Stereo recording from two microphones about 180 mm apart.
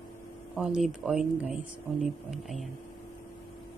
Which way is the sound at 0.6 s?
Centre (ahead or behind).